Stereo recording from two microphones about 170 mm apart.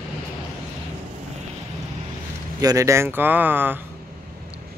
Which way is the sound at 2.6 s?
20° right (ahead or behind).